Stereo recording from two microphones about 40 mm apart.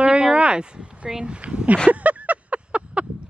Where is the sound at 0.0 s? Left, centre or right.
Right.